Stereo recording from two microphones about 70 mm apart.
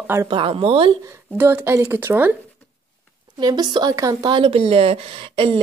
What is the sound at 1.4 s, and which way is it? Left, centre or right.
Speech, right.